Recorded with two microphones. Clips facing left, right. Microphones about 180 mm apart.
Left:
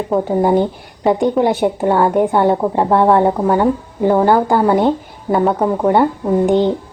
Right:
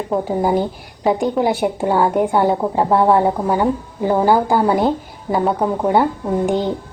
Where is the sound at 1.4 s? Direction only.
Centre (ahead or behind).